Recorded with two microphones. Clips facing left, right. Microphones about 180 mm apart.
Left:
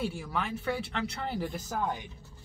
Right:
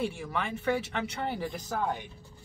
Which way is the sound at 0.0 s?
Centre (ahead or behind).